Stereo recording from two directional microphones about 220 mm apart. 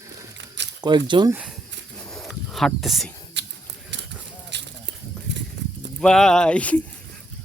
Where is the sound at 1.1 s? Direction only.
20° right (ahead or behind).